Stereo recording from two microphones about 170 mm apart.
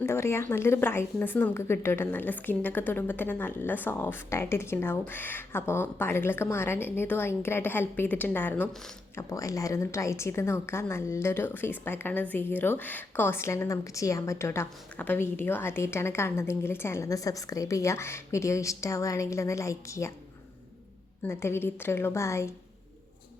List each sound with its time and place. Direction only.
0.0 s a woman's voice: 15° left (ahead or behind)
21.2 s a woman's voice: 15° left (ahead or behind)